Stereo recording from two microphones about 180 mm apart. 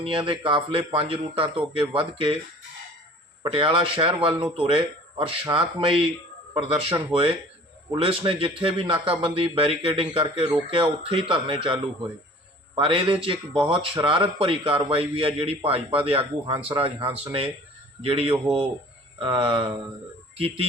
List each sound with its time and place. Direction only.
0.0 s speech: 30° right (ahead or behind)
3.4 s a man's voice: 30° right (ahead or behind)